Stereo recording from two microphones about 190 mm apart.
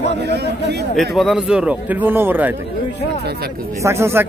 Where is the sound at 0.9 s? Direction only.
Centre (ahead or behind).